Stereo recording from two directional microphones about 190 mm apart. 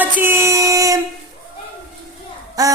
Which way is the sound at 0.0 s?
10° right (ahead or behind).